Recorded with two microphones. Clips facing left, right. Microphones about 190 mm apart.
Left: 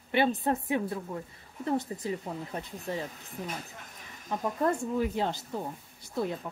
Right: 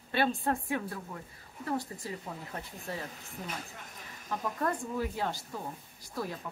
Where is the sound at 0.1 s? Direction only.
20° left (ahead or behind).